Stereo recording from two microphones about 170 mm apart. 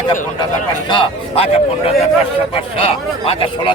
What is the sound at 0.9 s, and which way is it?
Speech, 30° left (ahead or behind).